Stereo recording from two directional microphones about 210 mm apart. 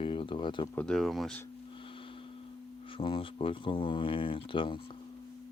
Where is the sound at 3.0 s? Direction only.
25° left (ahead or behind).